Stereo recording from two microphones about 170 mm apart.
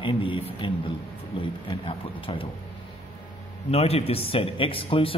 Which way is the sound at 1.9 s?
30° left (ahead or behind).